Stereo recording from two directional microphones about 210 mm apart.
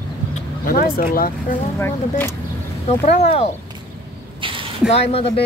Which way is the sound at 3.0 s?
30° left (ahead or behind).